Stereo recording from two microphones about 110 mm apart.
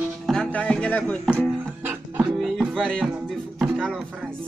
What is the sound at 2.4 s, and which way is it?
Music, centre (ahead or behind).